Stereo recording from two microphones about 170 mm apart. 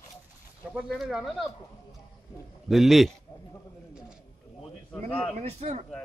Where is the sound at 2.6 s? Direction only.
Centre (ahead or behind).